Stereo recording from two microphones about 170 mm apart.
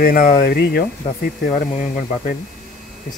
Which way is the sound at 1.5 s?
50° left (ahead or behind).